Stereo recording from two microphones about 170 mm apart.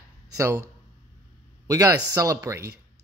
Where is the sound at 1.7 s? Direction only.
20° right (ahead or behind).